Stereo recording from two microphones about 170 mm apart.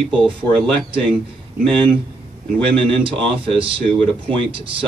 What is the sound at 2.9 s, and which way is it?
Speech, 30° right (ahead or behind).